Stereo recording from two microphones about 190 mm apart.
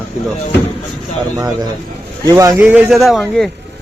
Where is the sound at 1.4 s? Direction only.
20° right (ahead or behind); by 3.5 s centre (ahead or behind).